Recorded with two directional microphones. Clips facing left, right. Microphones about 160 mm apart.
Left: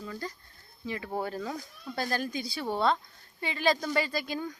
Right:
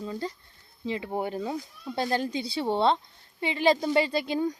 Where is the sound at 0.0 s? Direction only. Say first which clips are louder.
Right 5 dB; 25° right (ahead or behind).